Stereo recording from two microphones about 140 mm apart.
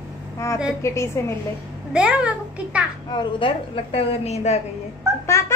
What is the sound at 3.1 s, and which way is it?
A woman's voice, 35° left (ahead or behind).